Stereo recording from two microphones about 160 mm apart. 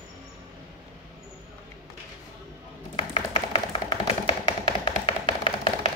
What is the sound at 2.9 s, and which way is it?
Tap, 35° left (ahead or behind).